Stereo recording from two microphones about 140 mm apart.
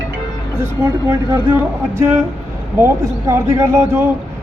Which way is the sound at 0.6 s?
15° right (ahead or behind).